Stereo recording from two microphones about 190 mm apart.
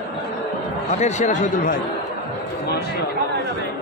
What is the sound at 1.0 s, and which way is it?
Speech, 40° left (ahead or behind).